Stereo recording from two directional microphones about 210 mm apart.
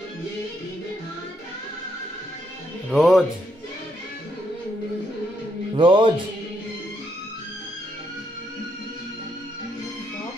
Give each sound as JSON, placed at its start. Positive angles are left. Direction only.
{"t": 2.9, "sound": "speech", "side_deg": 0}
{"t": 5.8, "sound": "music", "side_deg": -20}